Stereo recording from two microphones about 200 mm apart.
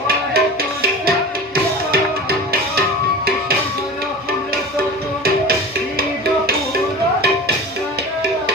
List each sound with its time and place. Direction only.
0.3 s music: 50° right (ahead or behind)